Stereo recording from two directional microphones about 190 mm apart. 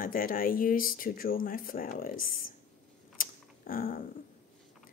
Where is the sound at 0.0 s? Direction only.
45° left (ahead or behind).